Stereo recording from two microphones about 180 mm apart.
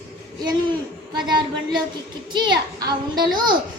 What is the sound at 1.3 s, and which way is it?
Speech, 25° right (ahead or behind).